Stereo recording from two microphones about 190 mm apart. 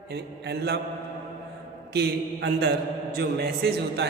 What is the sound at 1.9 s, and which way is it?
A man's voice, 60° right (ahead or behind).